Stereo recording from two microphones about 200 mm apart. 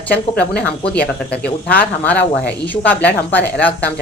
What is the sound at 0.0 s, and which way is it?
Speech, 10° left (ahead or behind).